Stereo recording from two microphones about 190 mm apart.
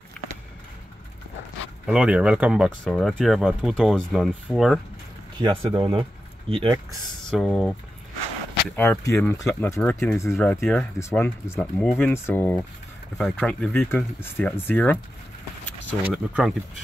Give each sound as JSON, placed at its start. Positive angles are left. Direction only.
{"t": 1.9, "sound": "speech", "side_deg": -5}
{"t": 5.4, "sound": "speech", "side_deg": -25}
{"t": 7.2, "sound": "speech", "side_deg": 0}
{"t": 8.7, "sound": "speech", "side_deg": 10}
{"t": 15.6, "sound": "a sound", "side_deg": 10}